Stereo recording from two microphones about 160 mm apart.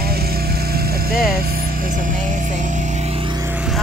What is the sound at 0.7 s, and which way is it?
Vehicle, 75° right (ahead or behind).